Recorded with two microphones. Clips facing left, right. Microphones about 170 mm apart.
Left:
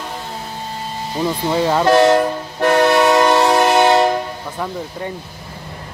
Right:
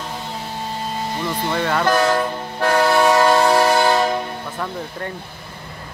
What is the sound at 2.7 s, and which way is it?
Train, 70° left (ahead or behind).